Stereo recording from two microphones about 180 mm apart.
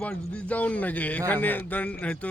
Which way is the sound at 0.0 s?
5° left (ahead or behind).